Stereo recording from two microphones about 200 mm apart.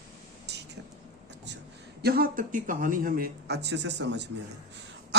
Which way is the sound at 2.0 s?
50° right (ahead or behind).